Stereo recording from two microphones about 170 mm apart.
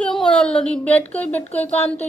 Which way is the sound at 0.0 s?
5° left (ahead or behind).